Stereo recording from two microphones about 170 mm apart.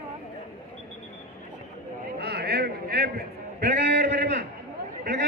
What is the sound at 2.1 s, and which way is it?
A man's voice, 70° right (ahead or behind).